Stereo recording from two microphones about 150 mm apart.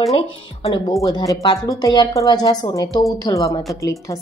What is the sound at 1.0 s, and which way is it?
A woman's voice, 25° left (ahead or behind).